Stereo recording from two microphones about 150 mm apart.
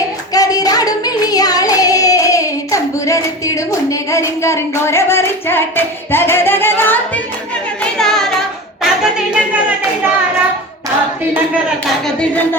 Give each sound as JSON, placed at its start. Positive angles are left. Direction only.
{"t": 0.3, "sound": "singing", "side_deg": 25}
{"t": 7.9, "sound": "singing", "side_deg": 5}
{"t": 12.0, "sound": "a sound", "side_deg": 5}